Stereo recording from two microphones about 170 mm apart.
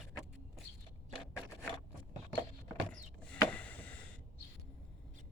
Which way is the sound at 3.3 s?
5° left (ahead or behind).